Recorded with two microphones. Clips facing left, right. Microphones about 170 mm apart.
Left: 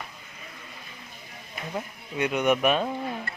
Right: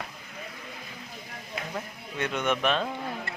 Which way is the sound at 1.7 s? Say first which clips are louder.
Left 3 dB; 15° left (ahead or behind).